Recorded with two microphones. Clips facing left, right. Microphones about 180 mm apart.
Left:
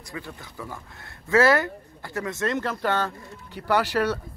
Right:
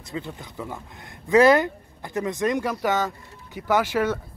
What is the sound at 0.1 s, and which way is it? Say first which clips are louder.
Speech: right 5 dB; 20° right (ahead or behind).